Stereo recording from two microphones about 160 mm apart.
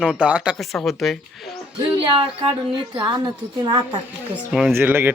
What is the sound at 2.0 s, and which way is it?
A man's voice, 35° right (ahead or behind).